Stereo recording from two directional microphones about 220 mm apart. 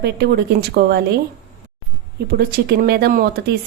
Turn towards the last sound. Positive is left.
turn(degrees=-45)  # may be behind; listen again after turning